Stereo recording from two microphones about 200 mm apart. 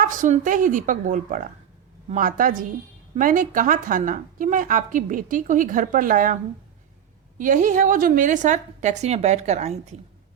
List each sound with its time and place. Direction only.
0.0 s a woman's voice: 40° right (ahead or behind)